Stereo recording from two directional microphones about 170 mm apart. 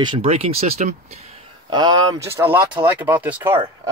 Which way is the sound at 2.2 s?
15° right (ahead or behind).